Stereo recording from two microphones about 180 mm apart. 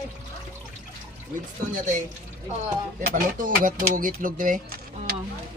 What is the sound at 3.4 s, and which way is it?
Speech, 45° right (ahead or behind).